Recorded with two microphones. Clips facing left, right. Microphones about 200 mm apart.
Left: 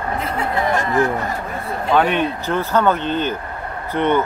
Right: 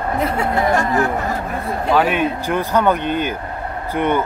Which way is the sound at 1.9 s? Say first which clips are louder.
Even; 5° right (ahead or behind).